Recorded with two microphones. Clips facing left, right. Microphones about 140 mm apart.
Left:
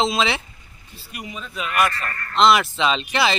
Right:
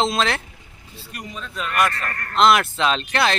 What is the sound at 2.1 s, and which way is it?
Speech, 65° right (ahead or behind).